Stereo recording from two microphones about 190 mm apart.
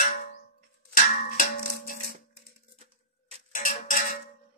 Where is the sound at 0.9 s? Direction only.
45° left (ahead or behind).